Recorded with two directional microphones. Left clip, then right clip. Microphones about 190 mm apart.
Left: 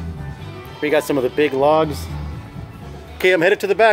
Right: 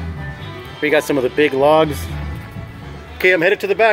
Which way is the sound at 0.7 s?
5° left (ahead or behind).